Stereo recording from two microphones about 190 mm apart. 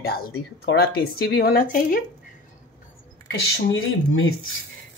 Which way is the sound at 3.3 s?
80° left.